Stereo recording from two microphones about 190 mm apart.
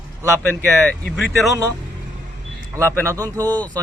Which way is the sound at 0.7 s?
5° left (ahead or behind).